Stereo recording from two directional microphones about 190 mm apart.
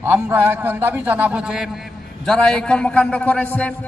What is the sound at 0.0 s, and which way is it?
A man's voice, 10° right (ahead or behind).